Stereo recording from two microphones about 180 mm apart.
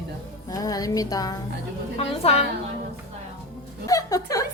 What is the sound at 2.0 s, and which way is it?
Speech, 35° left (ahead or behind).